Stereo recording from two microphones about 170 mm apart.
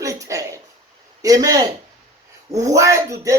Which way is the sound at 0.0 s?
20° right (ahead or behind).